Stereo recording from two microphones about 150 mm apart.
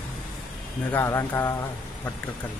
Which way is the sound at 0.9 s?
20° left (ahead or behind).